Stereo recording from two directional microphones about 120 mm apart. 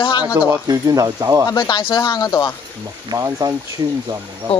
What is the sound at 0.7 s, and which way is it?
Speech, 30° right (ahead or behind).